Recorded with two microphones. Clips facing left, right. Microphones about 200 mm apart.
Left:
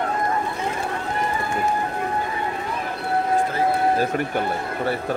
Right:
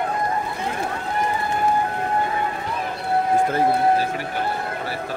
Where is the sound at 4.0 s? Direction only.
50° left (ahead or behind).